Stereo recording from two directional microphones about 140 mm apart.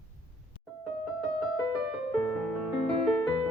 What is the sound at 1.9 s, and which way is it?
Music, 5° left (ahead or behind).